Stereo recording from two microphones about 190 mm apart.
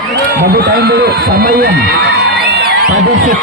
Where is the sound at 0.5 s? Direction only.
55° right (ahead or behind).